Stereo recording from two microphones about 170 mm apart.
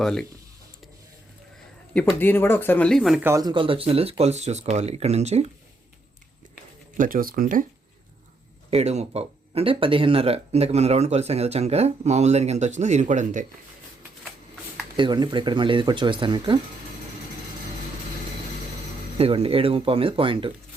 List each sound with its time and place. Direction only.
0.0 s speech: 5° left (ahead or behind)
1.9 s speech: 5° left (ahead or behind)
3.2 s speech: 20° right (ahead or behind); by 5.5 s 40° right (ahead or behind)
6.9 s speech: 55° right (ahead or behind)
8.7 s speech: 40° right (ahead or behind)
14.9 s speech: 25° right (ahead or behind)
19.1 s speech: 35° right (ahead or behind)